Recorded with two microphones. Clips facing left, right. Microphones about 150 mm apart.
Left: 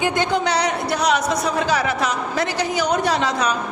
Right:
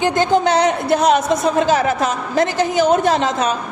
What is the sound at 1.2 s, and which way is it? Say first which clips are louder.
Speech: right 5 dB; 25° right (ahead or behind).